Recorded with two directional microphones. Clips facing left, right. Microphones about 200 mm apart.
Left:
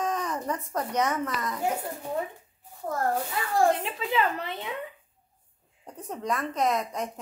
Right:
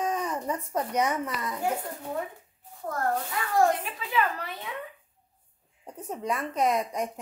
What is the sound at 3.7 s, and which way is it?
Speech, 25° left (ahead or behind).